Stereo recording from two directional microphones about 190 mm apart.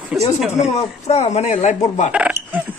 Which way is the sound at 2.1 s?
5° right (ahead or behind).